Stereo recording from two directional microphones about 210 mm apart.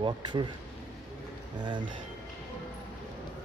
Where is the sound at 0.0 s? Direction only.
20° right (ahead or behind).